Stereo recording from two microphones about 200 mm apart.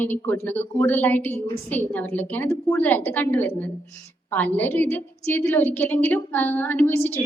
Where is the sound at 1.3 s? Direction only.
30° left (ahead or behind).